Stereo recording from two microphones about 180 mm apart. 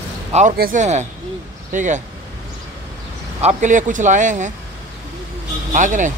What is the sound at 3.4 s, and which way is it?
Speech, 40° right (ahead or behind).